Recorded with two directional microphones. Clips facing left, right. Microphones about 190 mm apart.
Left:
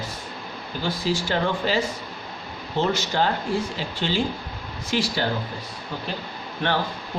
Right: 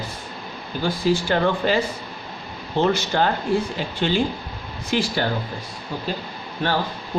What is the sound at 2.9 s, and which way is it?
Speech, 55° right (ahead or behind).